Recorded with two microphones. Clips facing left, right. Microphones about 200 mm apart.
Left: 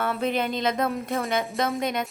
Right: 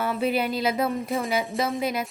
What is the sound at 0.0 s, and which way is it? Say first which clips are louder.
Speech: right 1 dB; 5° right (ahead or behind).